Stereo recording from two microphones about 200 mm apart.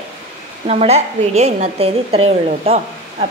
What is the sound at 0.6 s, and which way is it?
Speech, 30° right (ahead or behind).